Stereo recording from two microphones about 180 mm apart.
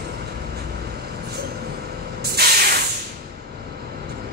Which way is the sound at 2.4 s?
65° right (ahead or behind).